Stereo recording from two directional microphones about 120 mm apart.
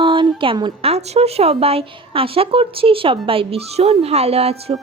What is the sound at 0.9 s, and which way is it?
A woman's voice, 60° right (ahead or behind).